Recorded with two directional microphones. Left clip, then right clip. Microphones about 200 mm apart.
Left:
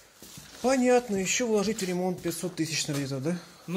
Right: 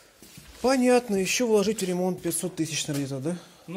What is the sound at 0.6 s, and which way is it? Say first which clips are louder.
A man's voice: right 2 dB; 25° right (ahead or behind).